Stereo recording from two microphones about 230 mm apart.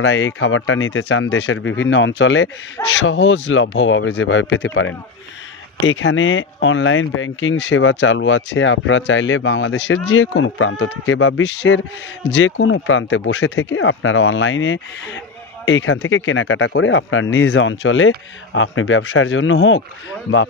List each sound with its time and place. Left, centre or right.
0.0 s speech: left